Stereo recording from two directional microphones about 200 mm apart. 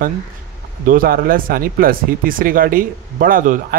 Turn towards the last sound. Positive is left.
turn(degrees=-40)  # may be behind; listen again after turning